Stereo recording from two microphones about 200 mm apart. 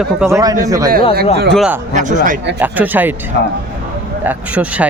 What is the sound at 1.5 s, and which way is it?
A man's voice, centre (ahead or behind).